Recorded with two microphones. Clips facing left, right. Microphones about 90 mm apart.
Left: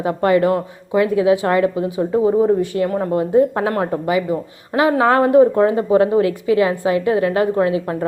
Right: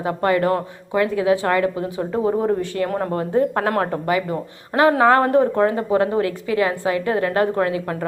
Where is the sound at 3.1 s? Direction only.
15° left (ahead or behind).